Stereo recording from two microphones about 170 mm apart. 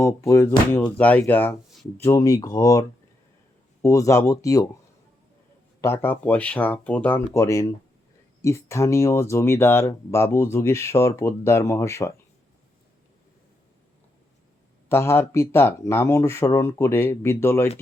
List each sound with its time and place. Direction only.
0.0 s speech: 15° left (ahead or behind)
3.8 s speech: 20° left (ahead or behind)
5.8 s speech: 15° left (ahead or behind)
14.8 s speech: 15° left (ahead or behind)